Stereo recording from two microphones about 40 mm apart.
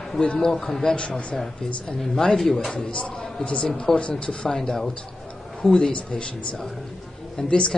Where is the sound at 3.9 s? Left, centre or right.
Centre.